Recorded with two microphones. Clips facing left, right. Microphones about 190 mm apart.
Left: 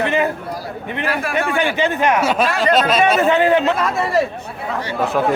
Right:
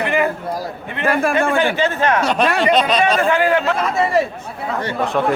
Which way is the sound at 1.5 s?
15° left (ahead or behind).